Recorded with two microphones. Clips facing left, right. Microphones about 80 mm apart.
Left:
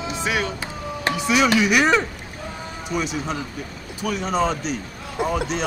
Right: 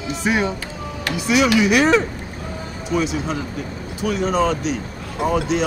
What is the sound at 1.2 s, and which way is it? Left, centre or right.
Speech, centre.